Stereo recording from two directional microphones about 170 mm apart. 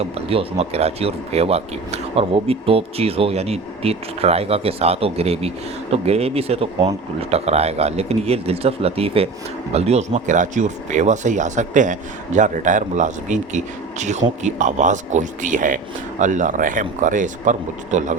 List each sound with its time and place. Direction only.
0.0 s speech: 35° right (ahead or behind)